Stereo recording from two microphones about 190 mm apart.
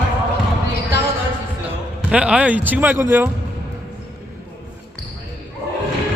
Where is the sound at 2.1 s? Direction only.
5° right (ahead or behind).